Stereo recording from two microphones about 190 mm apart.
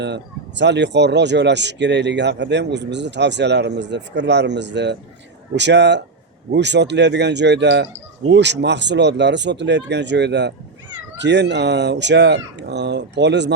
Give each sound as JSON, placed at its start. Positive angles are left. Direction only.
{"t": 0.0, "sound": "speech", "side_deg": -65}